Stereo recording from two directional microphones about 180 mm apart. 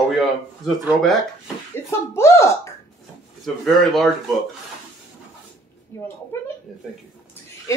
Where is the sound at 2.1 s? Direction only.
15° left (ahead or behind).